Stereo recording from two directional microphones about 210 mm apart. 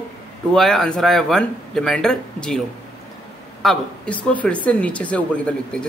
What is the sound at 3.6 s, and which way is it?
A woman's voice, centre (ahead or behind).